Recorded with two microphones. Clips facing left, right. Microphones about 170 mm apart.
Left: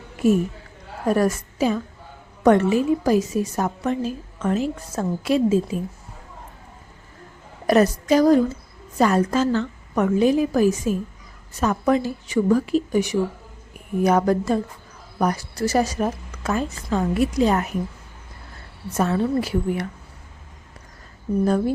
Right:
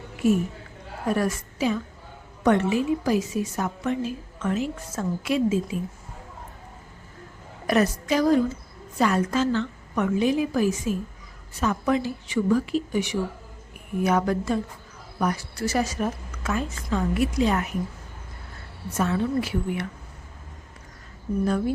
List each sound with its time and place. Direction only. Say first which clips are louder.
0.2 s a woman's voice: left 3 dB; 40° left (ahead or behind)
7.7 s a woman's voice: left 5 dB; 40° left (ahead or behind)
18.9 s a woman's voice: left 3 dB; 40° left (ahead or behind)